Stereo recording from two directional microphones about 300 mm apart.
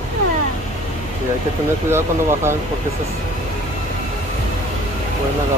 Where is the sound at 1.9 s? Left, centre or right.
Centre.